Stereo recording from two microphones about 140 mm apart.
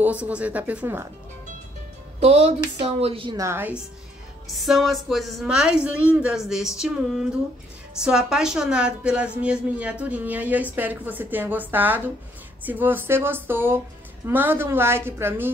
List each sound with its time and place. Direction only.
0.0 s a woman's voice: 10° right (ahead or behind)
2.1 s a woman's voice: 50° right (ahead or behind)
3.3 s a woman's voice: 20° right (ahead or behind)
4.6 s a woman's voice: centre (ahead or behind)
8.0 s a woman's voice: 5° right (ahead or behind)